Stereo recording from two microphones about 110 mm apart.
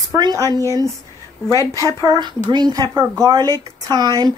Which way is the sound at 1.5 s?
30° left (ahead or behind).